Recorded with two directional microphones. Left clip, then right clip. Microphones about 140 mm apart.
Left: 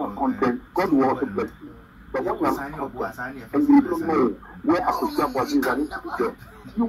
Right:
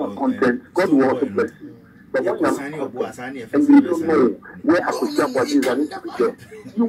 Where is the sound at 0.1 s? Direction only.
20° right (ahead or behind).